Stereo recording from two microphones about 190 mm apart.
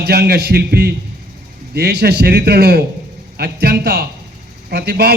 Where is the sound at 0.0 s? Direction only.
55° right (ahead or behind).